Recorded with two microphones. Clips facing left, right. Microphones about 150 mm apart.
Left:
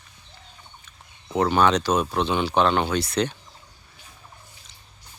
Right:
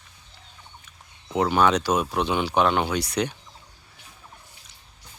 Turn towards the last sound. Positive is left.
turn(degrees=-10)  # may be behind; listen again after turning